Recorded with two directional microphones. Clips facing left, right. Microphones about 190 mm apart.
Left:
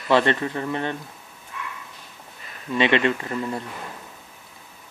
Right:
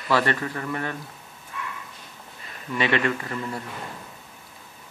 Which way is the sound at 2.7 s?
20° left (ahead or behind).